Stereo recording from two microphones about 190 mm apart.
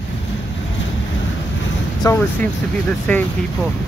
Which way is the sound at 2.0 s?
15° left (ahead or behind).